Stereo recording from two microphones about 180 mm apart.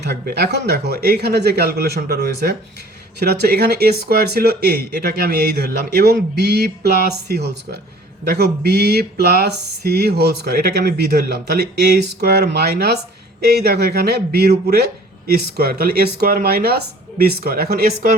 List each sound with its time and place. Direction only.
0.0 s speech: 65° right (ahead or behind)